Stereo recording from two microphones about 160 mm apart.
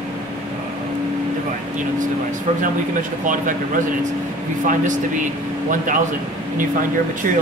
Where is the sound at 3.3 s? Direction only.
55° right (ahead or behind).